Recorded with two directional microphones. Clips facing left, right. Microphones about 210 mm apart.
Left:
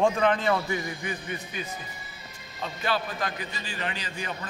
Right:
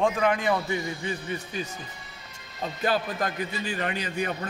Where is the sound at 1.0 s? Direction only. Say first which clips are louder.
Right 2 dB; 30° right (ahead or behind).